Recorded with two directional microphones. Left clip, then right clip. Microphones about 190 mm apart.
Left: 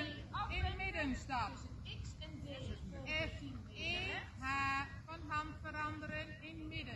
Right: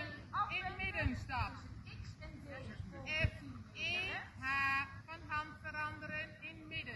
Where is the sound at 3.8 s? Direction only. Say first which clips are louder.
Right 2 dB; 25° right (ahead or behind).